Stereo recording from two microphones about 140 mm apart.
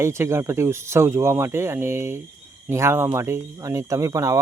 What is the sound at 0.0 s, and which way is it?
Speech, 20° right (ahead or behind).